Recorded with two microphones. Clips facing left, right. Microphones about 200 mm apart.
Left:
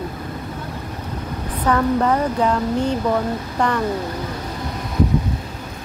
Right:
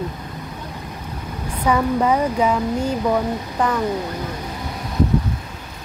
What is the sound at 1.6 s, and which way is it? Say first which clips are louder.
Speech: even; 10° right (ahead or behind).